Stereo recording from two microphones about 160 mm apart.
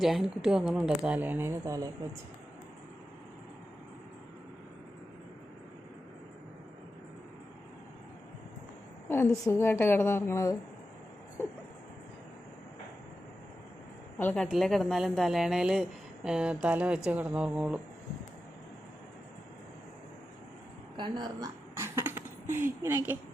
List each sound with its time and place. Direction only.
0.0 s speech: 5° right (ahead or behind); by 1.9 s 20° right (ahead or behind)
9.0 s a woman's voice: 15° left (ahead or behind)
14.2 s a woman's voice: 10° left (ahead or behind); by 17.7 s 10° right (ahead or behind)
20.9 s a sound: 25° right (ahead or behind)